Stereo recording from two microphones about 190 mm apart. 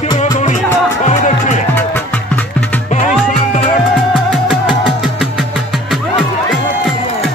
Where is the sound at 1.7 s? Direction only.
10° left (ahead or behind).